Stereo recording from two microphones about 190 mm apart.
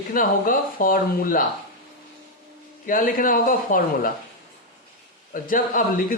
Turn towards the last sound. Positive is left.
turn(degrees=50)  # may be behind; listen again after turning